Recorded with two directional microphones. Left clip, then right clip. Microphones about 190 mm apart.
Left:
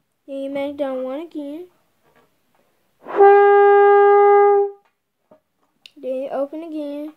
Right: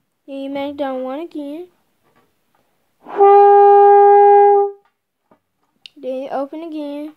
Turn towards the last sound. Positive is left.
turn(degrees=-20)  # may be behind; listen again after turning